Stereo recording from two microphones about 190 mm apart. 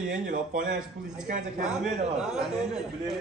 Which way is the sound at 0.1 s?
45° right (ahead or behind).